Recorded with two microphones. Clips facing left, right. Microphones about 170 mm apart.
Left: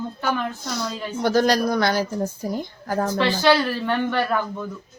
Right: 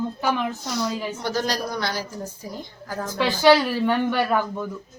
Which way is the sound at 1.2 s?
55° left (ahead or behind).